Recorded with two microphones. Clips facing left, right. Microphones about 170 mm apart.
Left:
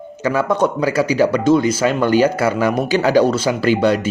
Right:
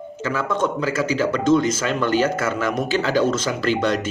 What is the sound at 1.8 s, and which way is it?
Speech, 45° left (ahead or behind).